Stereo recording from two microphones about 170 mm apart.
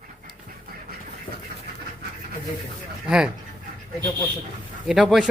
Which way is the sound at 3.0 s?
5° right (ahead or behind).